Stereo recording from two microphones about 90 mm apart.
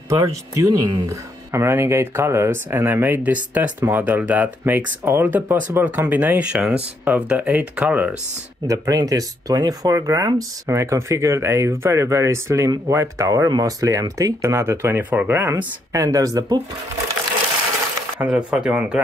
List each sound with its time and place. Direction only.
0.1 s speech: 40° right (ahead or behind); by 8.2 s 15° right (ahead or behind)
8.6 s speech: 40° right (ahead or behind)
18.2 s speech: 10° right (ahead or behind)